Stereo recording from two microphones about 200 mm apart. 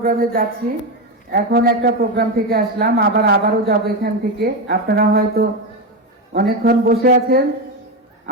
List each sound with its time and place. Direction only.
0.0 s a man's voice: 45° right (ahead or behind)